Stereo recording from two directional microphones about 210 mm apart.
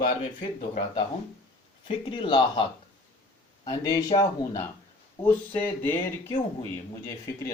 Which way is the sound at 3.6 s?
20° left (ahead or behind).